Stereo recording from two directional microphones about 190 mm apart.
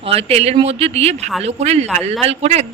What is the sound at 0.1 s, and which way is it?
A woman's voice, 30° right (ahead or behind).